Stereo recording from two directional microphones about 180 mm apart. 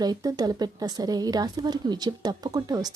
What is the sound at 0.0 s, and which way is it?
Speech, 20° right (ahead or behind).